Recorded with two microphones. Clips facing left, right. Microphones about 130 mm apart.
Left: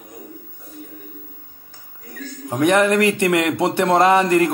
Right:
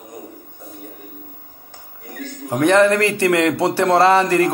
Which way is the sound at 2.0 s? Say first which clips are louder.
Right 2 dB; 70° right (ahead or behind).